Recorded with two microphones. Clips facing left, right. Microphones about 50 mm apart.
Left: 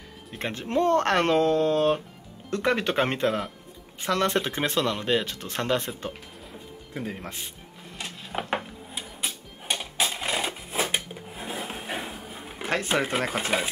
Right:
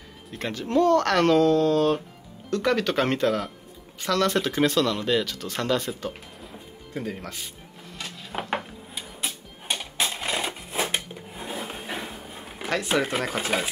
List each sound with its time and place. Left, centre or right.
0.4 s speech: left
6.9 s speech: centre
8.3 s dishes: centre
8.9 s a sound: centre
10.1 s sewing machine: centre
11.7 s a sound: centre
13.2 s speech: left